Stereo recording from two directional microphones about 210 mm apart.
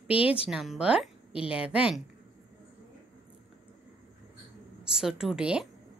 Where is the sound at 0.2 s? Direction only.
25° left (ahead or behind).